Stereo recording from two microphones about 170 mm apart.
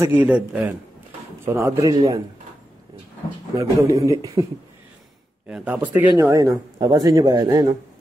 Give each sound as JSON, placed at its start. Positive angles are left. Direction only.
{"t": 0.0, "sound": "a man's voice", "side_deg": -10}
{"t": 3.5, "sound": "speech", "side_deg": -20}
{"t": 5.5, "sound": "speech", "side_deg": -10}